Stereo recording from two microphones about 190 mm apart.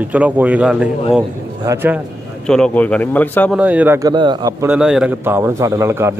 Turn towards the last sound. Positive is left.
turn(degrees=-15)  # may be behind; listen again after turning